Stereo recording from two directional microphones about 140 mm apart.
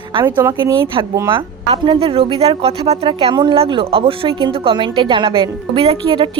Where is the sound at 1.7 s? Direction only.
40° right (ahead or behind).